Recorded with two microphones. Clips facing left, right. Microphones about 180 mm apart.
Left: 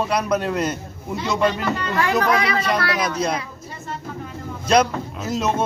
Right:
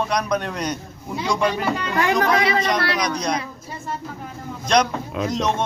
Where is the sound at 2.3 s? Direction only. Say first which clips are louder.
Right 1 dB; 25° right (ahead or behind).